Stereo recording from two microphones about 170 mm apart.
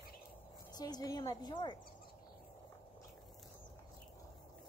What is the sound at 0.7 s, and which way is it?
A woman's voice, 25° left (ahead or behind).